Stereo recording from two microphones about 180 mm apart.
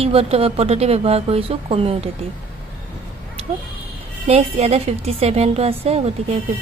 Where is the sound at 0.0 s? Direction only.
30° right (ahead or behind).